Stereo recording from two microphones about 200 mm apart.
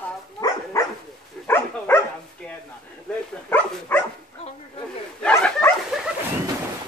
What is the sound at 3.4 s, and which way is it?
Speech, 10° left (ahead or behind).